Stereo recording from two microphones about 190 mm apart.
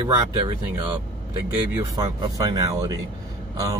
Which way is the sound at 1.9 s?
20° right (ahead or behind).